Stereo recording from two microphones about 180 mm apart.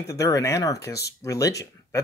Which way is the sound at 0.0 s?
20° left (ahead or behind).